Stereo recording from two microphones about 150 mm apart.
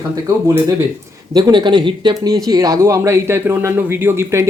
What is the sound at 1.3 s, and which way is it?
Speech, 30° right (ahead or behind).